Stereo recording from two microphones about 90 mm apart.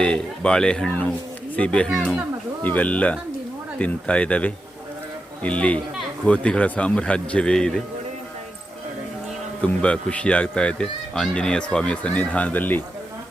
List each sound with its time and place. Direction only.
0.0 s speech: 10° left (ahead or behind)
9.6 s speech: 10° left (ahead or behind)